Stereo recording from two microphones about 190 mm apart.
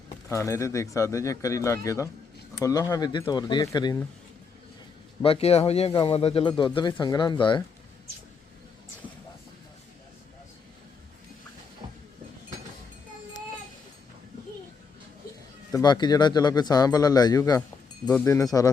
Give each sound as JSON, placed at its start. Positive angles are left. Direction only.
{"t": 0.3, "sound": "speech", "side_deg": 15}
{"t": 5.2, "sound": "speech", "side_deg": 30}
{"t": 15.7, "sound": "speech", "side_deg": 20}